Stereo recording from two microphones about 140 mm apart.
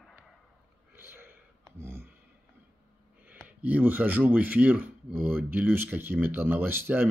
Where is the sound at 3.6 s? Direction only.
10° right (ahead or behind).